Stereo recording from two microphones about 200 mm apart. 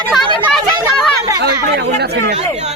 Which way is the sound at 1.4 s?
55° right (ahead or behind).